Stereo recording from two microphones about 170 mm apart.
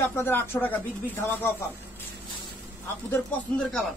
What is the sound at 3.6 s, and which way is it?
Speech, centre (ahead or behind).